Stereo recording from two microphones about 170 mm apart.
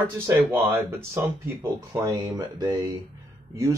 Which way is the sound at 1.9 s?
20° right (ahead or behind).